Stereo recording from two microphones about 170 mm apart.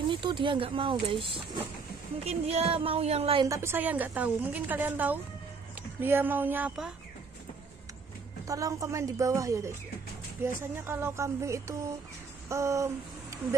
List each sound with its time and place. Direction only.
0.1 s speech: 30° right (ahead or behind)
3.4 s a woman's voice: 15° right (ahead or behind)
8.5 s a woman's voice: 20° right (ahead or behind)
12.4 s a sound: 15° right (ahead or behind)